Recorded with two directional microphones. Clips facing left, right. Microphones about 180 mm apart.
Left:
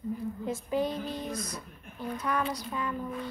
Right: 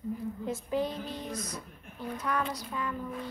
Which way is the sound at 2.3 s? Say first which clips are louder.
Left 1 dB; 20° left (ahead or behind).